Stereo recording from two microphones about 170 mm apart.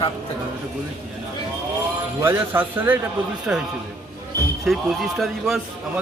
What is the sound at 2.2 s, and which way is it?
Speech, 15° right (ahead or behind).